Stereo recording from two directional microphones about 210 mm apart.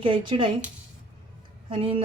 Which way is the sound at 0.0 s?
25° right (ahead or behind).